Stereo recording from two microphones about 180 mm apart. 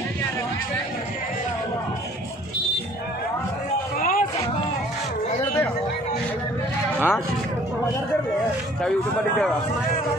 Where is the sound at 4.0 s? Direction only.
50° left (ahead or behind).